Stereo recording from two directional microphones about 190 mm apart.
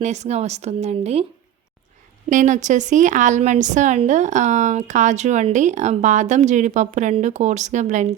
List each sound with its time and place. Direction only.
0.0 s a woman's voice: 35° right (ahead or behind)
2.3 s a woman's voice: 40° right (ahead or behind)